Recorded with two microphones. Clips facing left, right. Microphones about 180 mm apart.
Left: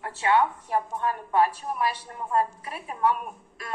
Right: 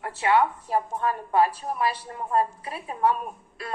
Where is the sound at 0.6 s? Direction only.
30° right (ahead or behind).